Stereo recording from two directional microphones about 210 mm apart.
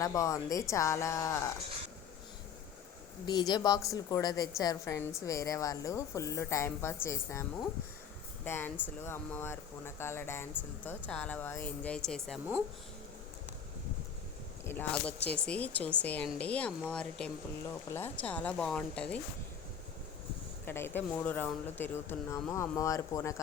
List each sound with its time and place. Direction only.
0.0 s speech: 15° left (ahead or behind)
3.2 s a woman's voice: 20° left (ahead or behind)
8.4 s speech: 10° left (ahead or behind)
14.6 s speech: 10° left (ahead or behind)
20.7 s speech: 10° left (ahead or behind)